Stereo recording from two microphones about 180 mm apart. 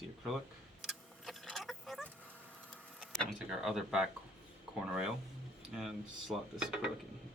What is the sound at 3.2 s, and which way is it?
Speech, 5° right (ahead or behind).